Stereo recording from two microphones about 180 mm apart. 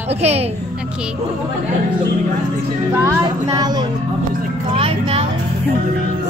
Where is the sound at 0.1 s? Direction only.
35° right (ahead or behind).